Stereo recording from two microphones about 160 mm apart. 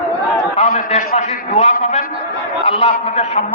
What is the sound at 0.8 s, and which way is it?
A man's voice, 40° left (ahead or behind).